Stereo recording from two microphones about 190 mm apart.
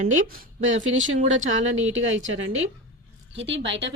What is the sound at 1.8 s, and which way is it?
Speech, 90° right.